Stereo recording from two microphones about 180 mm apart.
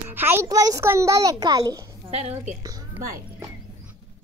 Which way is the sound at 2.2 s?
35° right (ahead or behind).